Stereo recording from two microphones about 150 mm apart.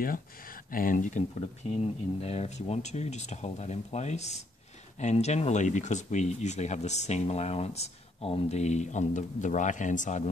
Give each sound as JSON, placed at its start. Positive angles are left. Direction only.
{"t": 0.7, "sound": "speech", "side_deg": 70}
{"t": 1.8, "sound": "speech", "side_deg": 45}